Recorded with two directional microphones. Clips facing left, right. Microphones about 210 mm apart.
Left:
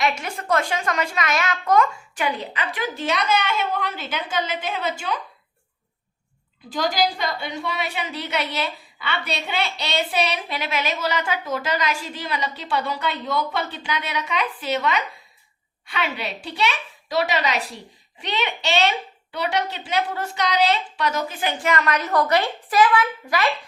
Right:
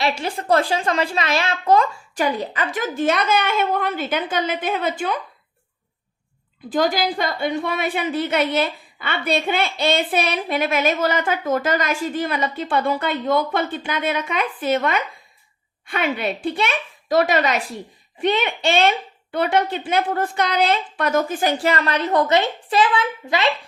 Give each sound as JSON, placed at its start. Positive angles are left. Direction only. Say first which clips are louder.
{"t": 0.0, "sound": "a woman's voice", "louder": "right 2 dB", "side_deg": -30}
{"t": 6.7, "sound": "a woman's voice", "louder": "right 3 dB", "side_deg": -50}
{"t": 21.6, "sound": "a woman's voice", "louder": "right 2 dB", "side_deg": -30}